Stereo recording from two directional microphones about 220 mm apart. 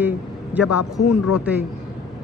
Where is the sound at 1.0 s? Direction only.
90° left.